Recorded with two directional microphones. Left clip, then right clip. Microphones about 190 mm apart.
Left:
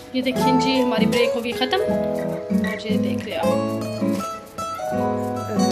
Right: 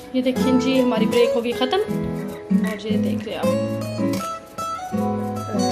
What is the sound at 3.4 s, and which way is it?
Music, centre (ahead or behind).